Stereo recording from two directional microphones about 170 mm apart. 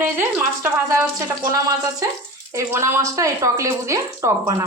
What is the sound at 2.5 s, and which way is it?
Speech, 15° right (ahead or behind).